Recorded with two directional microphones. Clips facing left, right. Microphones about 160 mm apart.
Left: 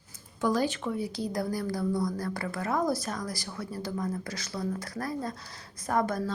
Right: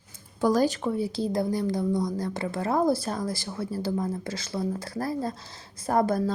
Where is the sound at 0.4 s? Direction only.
40° right (ahead or behind).